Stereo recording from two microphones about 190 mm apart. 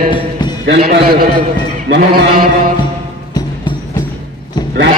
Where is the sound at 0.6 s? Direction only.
50° right (ahead or behind).